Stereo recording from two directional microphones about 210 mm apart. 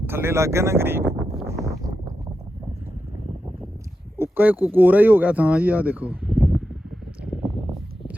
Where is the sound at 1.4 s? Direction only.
15° right (ahead or behind).